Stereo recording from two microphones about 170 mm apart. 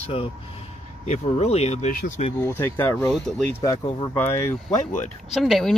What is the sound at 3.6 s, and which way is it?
Speech, 20° left (ahead or behind).